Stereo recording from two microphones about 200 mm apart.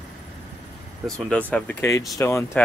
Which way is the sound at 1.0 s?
5° left (ahead or behind).